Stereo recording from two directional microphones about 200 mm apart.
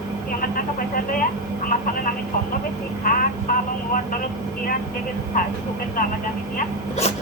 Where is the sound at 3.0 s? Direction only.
45° left (ahead or behind).